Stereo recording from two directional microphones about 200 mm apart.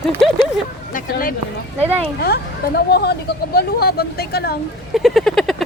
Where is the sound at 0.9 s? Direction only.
45° left (ahead or behind).